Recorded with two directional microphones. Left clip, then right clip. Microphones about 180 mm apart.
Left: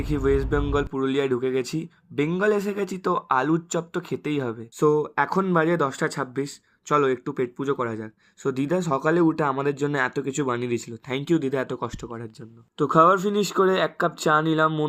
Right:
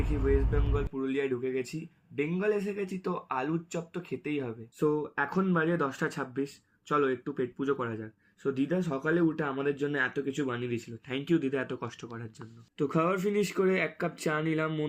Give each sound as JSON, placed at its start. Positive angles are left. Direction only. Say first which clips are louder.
{"t": 0.1, "sound": "speech", "louder": "left 8 dB", "side_deg": 45}